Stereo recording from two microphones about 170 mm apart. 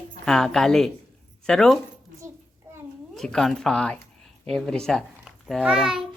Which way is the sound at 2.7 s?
15° right (ahead or behind).